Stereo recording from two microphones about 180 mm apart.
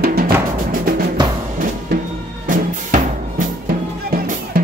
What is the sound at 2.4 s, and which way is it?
Music, 45° right (ahead or behind).